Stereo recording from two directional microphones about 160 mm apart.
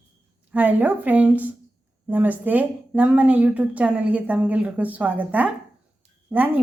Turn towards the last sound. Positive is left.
turn(degrees=-10)  # may be behind; listen again after turning